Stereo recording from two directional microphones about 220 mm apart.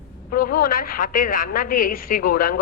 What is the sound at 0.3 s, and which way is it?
A man's voice, 40° left (ahead or behind).